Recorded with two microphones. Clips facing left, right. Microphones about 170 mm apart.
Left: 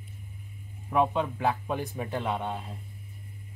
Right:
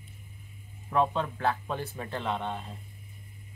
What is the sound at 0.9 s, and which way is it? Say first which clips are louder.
Speech: left 2 dB; 10° left (ahead or behind).